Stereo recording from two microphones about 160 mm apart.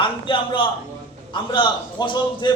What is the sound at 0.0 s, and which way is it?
A man's voice, 30° left (ahead or behind).